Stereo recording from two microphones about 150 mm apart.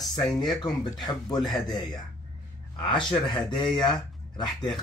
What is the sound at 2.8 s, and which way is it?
Speech, 30° left (ahead or behind).